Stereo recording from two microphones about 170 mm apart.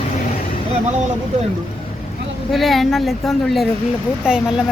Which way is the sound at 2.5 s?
Centre (ahead or behind).